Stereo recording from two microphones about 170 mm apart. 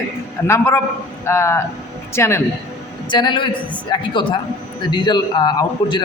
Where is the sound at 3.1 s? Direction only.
25° left (ahead or behind).